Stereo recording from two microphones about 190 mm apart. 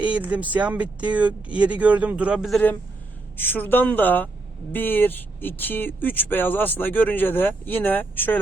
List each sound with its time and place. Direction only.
0.0 s speech: 5° right (ahead or behind)
3.3 s speech: 10° left (ahead or behind)